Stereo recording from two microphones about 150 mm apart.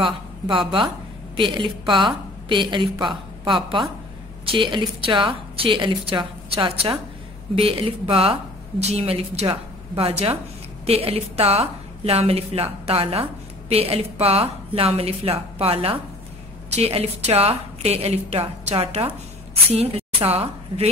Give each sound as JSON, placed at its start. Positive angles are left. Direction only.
{"t": 0.0, "sound": "a woman's voice", "side_deg": -35}